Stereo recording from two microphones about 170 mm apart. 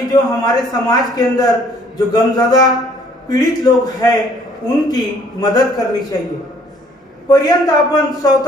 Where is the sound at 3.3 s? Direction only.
20° left (ahead or behind).